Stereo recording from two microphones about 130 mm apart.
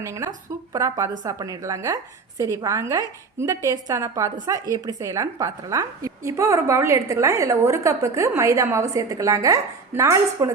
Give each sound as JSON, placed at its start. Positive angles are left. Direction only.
{"t": 0.0, "sound": "a woman's voice", "side_deg": -20}